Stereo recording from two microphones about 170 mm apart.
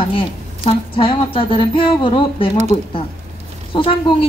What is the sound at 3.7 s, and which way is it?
Speech, 30° left (ahead or behind).